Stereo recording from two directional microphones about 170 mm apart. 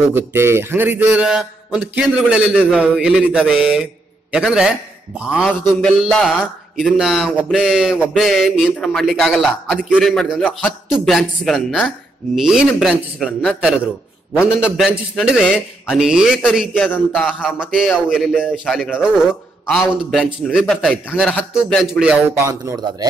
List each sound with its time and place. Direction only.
0.1 s a man's voice: 15° right (ahead or behind)
16.7 s a man's voice: 10° left (ahead or behind)
17.4 s a man's voice: 5° right (ahead or behind)
22.5 s speech: 20° right (ahead or behind)